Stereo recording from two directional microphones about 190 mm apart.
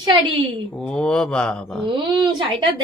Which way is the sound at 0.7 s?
5° left (ahead or behind).